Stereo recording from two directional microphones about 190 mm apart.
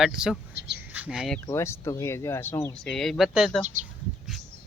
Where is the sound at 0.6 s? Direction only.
65° right (ahead or behind).